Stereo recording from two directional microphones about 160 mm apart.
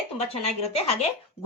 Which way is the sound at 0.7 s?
40° left (ahead or behind).